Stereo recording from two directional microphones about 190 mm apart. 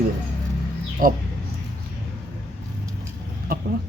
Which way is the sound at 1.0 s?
50° right (ahead or behind).